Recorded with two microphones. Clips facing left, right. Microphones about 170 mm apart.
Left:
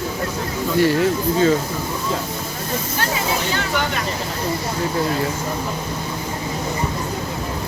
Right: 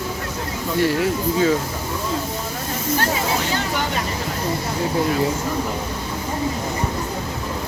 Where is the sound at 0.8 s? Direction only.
5° right (ahead or behind).